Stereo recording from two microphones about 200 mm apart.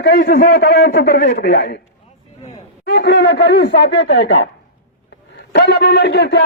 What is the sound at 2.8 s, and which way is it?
A man's voice, 60° left (ahead or behind).